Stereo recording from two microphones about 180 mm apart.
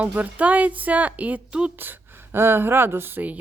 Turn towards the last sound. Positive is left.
turn(degrees=-10)  # may be behind; listen again after turning